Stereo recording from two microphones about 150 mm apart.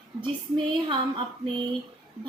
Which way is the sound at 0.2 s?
35° right (ahead or behind).